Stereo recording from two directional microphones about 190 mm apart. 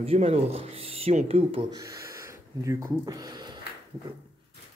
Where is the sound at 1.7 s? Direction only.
15° right (ahead or behind).